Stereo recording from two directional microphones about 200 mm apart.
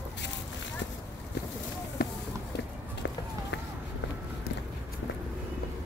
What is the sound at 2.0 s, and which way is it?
Run, 50° left (ahead or behind).